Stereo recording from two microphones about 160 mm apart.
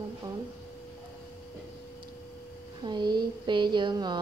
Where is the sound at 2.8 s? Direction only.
30° right (ahead or behind).